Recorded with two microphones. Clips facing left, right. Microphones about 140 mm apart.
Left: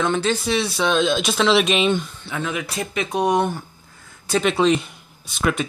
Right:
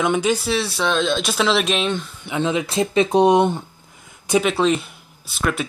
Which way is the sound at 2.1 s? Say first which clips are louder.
Right 5 dB; 20° right (ahead or behind).